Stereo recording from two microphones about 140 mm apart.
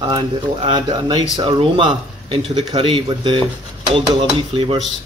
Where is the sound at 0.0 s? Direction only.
35° right (ahead or behind).